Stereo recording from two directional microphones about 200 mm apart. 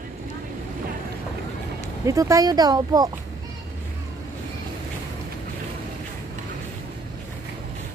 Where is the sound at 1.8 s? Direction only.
15° right (ahead or behind).